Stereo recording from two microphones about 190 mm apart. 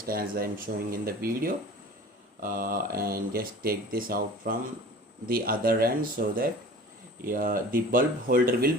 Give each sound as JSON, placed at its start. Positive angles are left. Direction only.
{"t": 0.0, "sound": "speech", "side_deg": -50}